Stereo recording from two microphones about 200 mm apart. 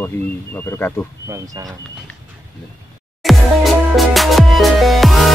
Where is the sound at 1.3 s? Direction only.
20° right (ahead or behind).